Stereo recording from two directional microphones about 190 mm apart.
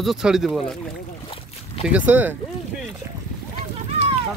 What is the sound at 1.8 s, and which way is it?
Speech, 10° right (ahead or behind).